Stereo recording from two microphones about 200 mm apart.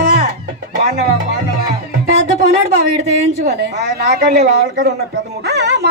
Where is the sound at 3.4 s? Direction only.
55° right (ahead or behind).